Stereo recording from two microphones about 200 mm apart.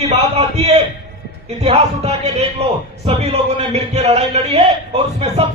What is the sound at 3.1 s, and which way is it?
A man's voice, 30° right (ahead or behind).